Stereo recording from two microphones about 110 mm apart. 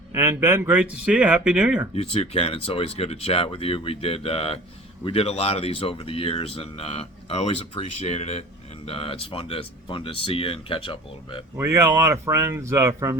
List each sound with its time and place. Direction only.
0.1 s speech: 20° right (ahead or behind)
0.8 s speech: 10° right (ahead or behind)
2.0 s speech: 65° left (ahead or behind)
8.9 s speech: 60° left (ahead or behind)
11.5 s speech: 25° right (ahead or behind)